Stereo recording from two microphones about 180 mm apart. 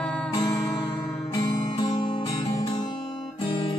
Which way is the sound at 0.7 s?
20° left (ahead or behind).